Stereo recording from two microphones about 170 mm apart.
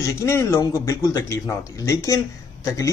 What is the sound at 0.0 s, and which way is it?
Speech, 15° left (ahead or behind).